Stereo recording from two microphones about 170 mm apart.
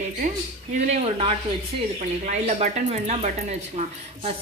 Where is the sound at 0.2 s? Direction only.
45° right (ahead or behind).